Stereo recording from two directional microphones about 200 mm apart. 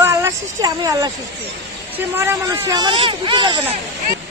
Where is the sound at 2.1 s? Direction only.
10° right (ahead or behind).